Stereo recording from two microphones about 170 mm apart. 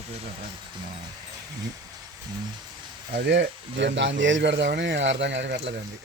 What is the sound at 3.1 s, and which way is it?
Speech, 85° right.